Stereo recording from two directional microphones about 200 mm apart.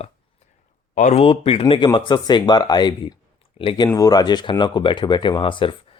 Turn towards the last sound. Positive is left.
turn(degrees=25)  # may be behind; listen again after turning